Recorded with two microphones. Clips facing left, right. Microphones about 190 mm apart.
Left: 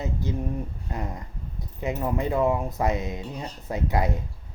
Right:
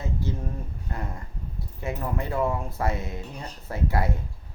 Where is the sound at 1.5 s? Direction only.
20° left (ahead or behind).